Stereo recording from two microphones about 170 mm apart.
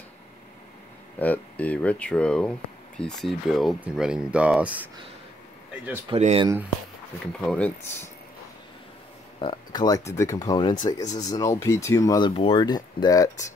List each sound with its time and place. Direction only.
1.2 s speech: 10° left (ahead or behind); by 4.8 s 10° right (ahead or behind)
6.1 s speech: 40° right (ahead or behind)
7.4 s speech: 10° left (ahead or behind)
9.4 s speech: 25° left (ahead or behind)
12.3 s speech: 30° left (ahead or behind)